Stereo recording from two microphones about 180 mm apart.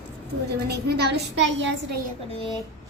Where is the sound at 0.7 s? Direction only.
65° right (ahead or behind); by 2.0 s 90° right.